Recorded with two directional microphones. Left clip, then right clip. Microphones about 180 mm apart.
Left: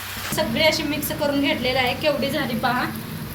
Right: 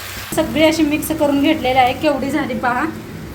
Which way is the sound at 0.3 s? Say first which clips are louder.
Right 6 dB; 45° right (ahead or behind).